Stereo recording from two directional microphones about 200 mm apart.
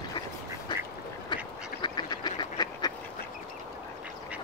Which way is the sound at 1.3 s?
25° left (ahead or behind).